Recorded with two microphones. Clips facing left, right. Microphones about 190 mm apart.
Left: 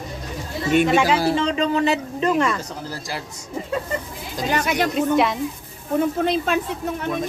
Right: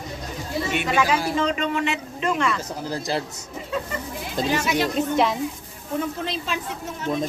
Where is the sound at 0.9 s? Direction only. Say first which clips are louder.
Left 4 dB; 30° left (ahead or behind).